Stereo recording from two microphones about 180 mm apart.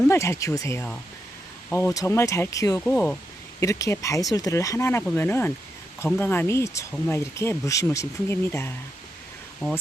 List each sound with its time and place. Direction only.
0.1 s speech: 15° left (ahead or behind)